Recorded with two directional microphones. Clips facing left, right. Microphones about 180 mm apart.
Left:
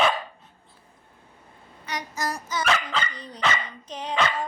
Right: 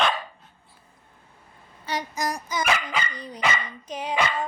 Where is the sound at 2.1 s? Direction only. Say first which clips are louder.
Left 1 dB; 15° right (ahead or behind).